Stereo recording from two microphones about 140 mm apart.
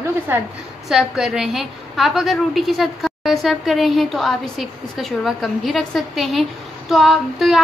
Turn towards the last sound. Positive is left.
turn(degrees=0)  # may be behind; listen again after turning